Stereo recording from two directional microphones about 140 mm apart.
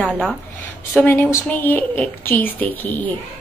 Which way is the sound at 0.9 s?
10° left (ahead or behind).